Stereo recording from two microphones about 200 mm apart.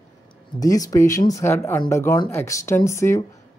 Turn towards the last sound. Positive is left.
turn(degrees=15)  # may be behind; listen again after turning